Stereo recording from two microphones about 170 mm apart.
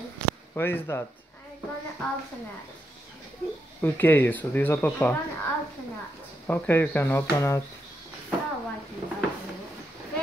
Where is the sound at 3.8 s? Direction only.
10° left (ahead or behind).